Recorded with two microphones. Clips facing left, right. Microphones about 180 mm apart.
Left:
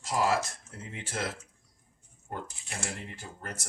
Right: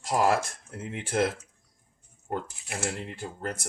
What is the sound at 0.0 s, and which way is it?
Speech, 55° right (ahead or behind).